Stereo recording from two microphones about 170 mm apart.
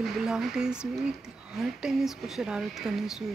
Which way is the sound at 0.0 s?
Centre (ahead or behind).